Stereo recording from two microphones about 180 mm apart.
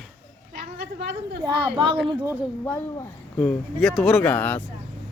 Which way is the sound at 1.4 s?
25° right (ahead or behind).